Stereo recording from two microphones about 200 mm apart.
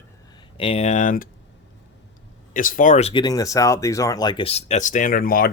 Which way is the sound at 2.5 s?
40° left (ahead or behind).